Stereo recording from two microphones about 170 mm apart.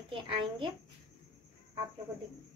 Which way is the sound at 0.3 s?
30° right (ahead or behind).